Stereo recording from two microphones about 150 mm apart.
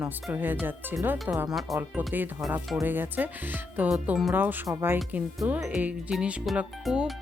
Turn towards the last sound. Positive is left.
turn(degrees=-5)  # may be behind; listen again after turning